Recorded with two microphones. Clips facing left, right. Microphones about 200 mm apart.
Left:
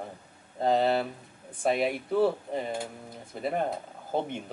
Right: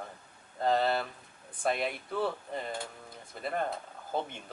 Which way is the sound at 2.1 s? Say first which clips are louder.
Left 9 dB; 20° left (ahead or behind).